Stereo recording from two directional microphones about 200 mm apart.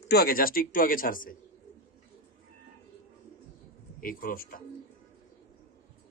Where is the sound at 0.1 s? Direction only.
50° left (ahead or behind).